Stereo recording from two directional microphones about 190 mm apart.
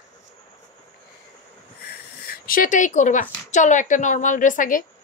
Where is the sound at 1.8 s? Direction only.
50° left (ahead or behind).